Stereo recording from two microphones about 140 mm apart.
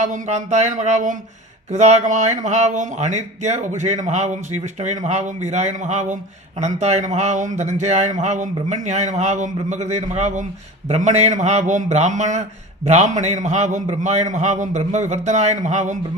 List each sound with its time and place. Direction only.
0.0 s a man's voice: 60° right (ahead or behind)